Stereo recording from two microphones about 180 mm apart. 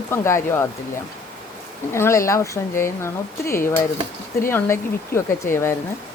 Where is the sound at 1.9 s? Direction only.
15° left (ahead or behind).